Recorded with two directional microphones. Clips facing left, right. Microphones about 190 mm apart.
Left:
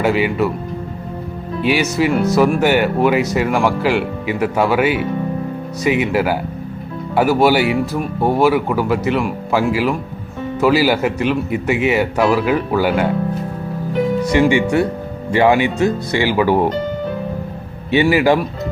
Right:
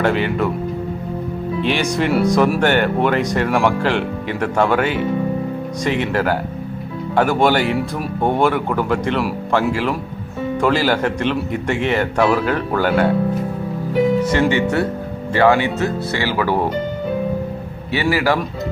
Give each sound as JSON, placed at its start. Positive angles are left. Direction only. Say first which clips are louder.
{"t": 0.0, "sound": "speech", "louder": "left 2 dB", "side_deg": 5}
{"t": 1.6, "sound": "speech", "louder": "left 3 dB", "side_deg": 5}
{"t": 14.2, "sound": "music", "louder": "left 2 dB", "side_deg": 10}
{"t": 14.5, "sound": "speech", "louder": "left 2 dB", "side_deg": 10}
{"t": 17.9, "sound": "a man's voice", "louder": "left 5 dB", "side_deg": 20}